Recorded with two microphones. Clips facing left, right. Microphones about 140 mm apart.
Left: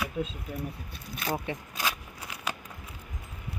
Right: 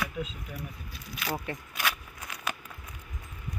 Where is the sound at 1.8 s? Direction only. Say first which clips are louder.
Right 1 dB; 25° left (ahead or behind).